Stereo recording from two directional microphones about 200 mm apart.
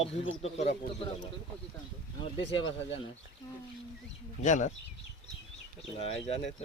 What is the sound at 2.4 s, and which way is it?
Speech, 25° left (ahead or behind).